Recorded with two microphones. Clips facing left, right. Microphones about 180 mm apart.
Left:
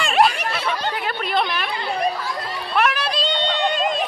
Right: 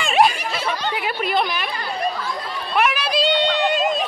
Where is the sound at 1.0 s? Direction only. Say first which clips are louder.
Right 2 dB; 5° right (ahead or behind).